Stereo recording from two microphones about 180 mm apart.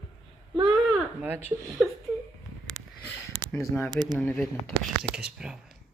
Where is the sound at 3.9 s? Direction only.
25° right (ahead or behind).